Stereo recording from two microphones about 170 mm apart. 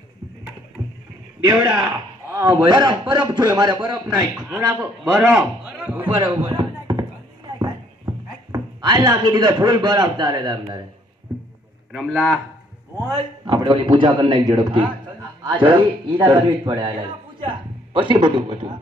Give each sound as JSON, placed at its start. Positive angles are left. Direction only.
{"t": 0.8, "sound": "rowboat", "side_deg": 0}
{"t": 1.4, "sound": "a man's voice", "side_deg": -10}
{"t": 4.4, "sound": "a man's voice", "side_deg": -5}
{"t": 6.1, "sound": "a sound", "side_deg": -25}
{"t": 7.5, "sound": "music", "side_deg": -20}
{"t": 11.9, "sound": "a man's voice", "side_deg": 0}
{"t": 13.1, "sound": "a man's voice", "side_deg": -25}
{"t": 17.4, "sound": "a man's voice", "side_deg": -30}